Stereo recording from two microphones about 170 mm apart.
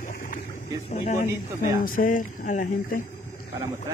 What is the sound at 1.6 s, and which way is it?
Speech, 50° left (ahead or behind).